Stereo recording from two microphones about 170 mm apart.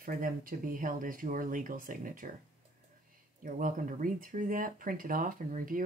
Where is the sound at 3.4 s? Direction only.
50° right (ahead or behind).